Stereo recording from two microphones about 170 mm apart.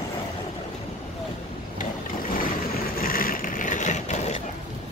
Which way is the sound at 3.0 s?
55° left (ahead or behind).